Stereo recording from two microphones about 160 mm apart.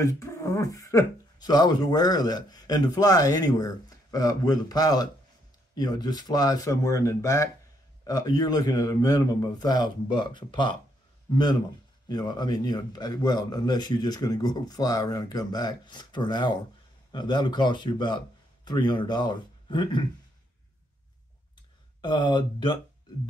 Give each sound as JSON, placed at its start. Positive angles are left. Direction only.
{"t": 0.0, "sound": "speech", "side_deg": 20}
{"t": 12.1, "sound": "speech", "side_deg": 25}
{"t": 22.0, "sound": "speech", "side_deg": 30}